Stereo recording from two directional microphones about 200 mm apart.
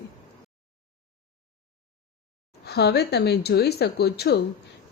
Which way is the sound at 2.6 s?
55° left (ahead or behind).